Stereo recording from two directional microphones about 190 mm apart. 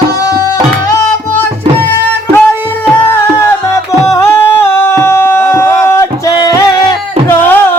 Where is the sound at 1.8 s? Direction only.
10° left (ahead or behind).